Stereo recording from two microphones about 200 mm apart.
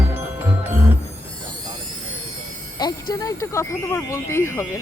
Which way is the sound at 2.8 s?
20° left (ahead or behind).